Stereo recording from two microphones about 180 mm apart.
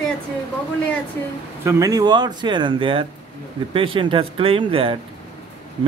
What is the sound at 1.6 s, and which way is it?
Speech, 15° right (ahead or behind).